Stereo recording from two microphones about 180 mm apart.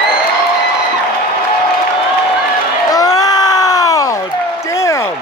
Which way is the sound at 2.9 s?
20° left (ahead or behind).